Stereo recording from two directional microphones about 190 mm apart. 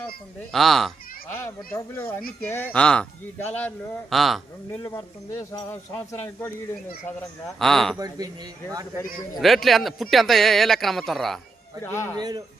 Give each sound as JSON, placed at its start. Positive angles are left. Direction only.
{"t": 0.5, "sound": "speech", "side_deg": 0}
{"t": 4.9, "sound": "speech", "side_deg": 15}
{"t": 7.4, "sound": "speech", "side_deg": 0}
{"t": 7.9, "sound": "a man's voice", "side_deg": -20}
{"t": 9.4, "sound": "speech", "side_deg": 0}
{"t": 11.8, "sound": "speech", "side_deg": 15}
{"t": 12.1, "sound": "a man's voice", "side_deg": -20}